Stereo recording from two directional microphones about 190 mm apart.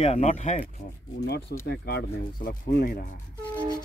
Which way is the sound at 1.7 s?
60° left (ahead or behind).